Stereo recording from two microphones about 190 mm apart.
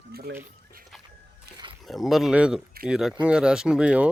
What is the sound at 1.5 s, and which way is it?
Music, 55° right (ahead or behind).